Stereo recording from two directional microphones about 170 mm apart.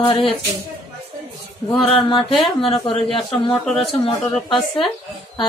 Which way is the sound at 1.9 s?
30° left (ahead or behind).